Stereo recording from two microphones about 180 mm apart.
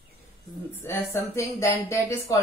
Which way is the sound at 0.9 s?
15° left (ahead or behind).